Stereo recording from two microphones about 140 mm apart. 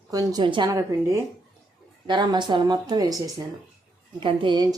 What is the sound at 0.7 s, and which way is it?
A woman's voice, 20° right (ahead or behind).